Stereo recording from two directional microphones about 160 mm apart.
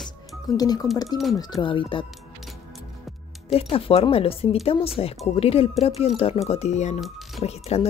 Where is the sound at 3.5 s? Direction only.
35° left (ahead or behind).